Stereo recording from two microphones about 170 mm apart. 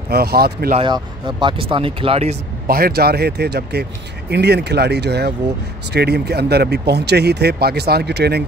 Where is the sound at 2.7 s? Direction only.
65° right (ahead or behind).